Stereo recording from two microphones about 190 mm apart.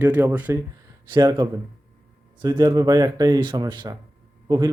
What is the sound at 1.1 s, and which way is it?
Speech, 25° right (ahead or behind).